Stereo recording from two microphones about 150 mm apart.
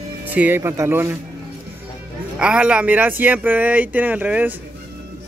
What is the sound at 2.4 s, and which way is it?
Speech, 5° right (ahead or behind).